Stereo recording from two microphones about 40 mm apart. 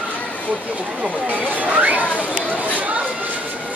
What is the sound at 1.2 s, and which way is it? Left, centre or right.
Speech, right.